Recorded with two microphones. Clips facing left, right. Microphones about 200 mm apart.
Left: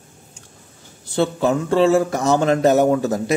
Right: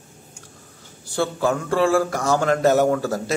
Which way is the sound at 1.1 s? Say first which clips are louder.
Left 3 dB; 20° left (ahead or behind).